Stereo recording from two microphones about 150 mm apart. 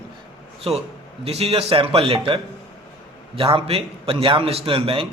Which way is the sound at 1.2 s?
40° right (ahead or behind).